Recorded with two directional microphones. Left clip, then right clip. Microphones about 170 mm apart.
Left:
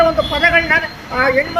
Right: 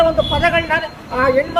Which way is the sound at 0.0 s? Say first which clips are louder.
Left 1 dB; 15° right (ahead or behind).